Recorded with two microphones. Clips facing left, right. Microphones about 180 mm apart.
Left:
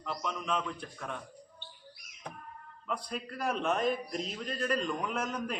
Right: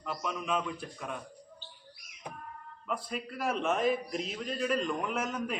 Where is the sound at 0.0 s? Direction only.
5° right (ahead or behind).